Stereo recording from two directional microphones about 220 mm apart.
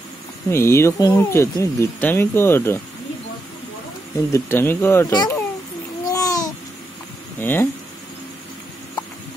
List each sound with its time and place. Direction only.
0.5 s speech: 10° left (ahead or behind)
4.3 s speech: 10° left (ahead or behind)
6.0 s babbling: 15° left (ahead or behind)
7.3 s speech: 10° left (ahead or behind)